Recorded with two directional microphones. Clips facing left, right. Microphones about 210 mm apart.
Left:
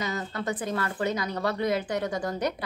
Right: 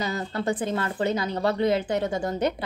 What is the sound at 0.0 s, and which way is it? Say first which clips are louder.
A woman's voice: right 3 dB; 30° right (ahead or behind).